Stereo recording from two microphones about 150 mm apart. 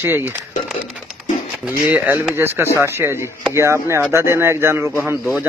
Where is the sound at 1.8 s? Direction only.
10° right (ahead or behind).